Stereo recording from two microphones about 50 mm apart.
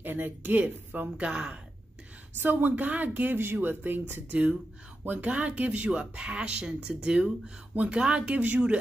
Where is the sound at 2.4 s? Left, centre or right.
Right.